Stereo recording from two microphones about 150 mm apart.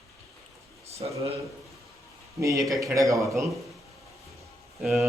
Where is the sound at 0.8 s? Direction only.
45° right (ahead or behind).